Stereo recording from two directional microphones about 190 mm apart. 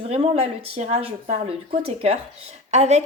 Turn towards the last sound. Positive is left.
turn(degrees=-35)  # may be behind; listen again after turning